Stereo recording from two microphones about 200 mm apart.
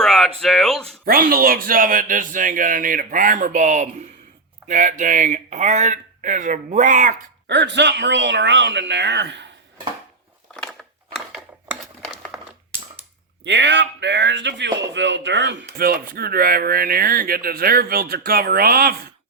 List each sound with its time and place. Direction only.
0.0 s a sound: centre (ahead or behind)
1.0 s speech: 50° right (ahead or behind)
7.4 s speech: 60° right (ahead or behind)
10.5 s a sound: 5° left (ahead or behind)
12.0 s crushing: 5° right (ahead or behind)
13.4 s speech: 65° right (ahead or behind)
15.6 s speech: 45° right (ahead or behind)